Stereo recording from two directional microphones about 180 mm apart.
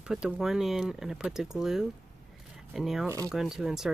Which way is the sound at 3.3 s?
Centre (ahead or behind).